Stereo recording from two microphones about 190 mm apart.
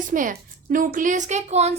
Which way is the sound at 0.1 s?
45° right (ahead or behind).